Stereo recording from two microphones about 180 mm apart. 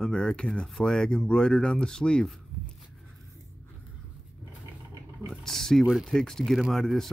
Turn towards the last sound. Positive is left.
turn(degrees=0)  # may be behind; listen again after turning